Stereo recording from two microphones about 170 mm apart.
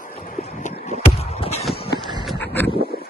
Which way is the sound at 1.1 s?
35° left (ahead or behind).